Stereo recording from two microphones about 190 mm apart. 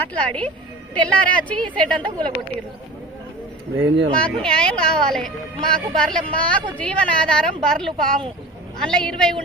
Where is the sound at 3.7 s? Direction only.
80° right.